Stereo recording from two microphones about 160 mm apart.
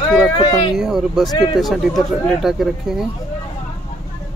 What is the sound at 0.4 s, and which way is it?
Speech, 30° left (ahead or behind).